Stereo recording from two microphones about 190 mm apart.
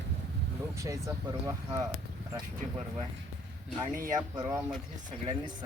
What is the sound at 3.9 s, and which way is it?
Speech, 50° right (ahead or behind).